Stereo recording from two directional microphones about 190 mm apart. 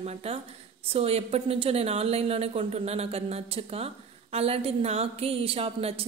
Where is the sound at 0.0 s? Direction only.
30° right (ahead or behind).